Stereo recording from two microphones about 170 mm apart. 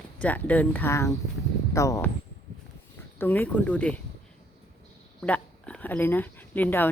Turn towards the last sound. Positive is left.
turn(degrees=10)  # may be behind; listen again after turning